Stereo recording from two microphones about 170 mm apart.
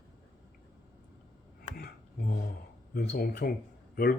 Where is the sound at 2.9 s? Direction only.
70° left (ahead or behind).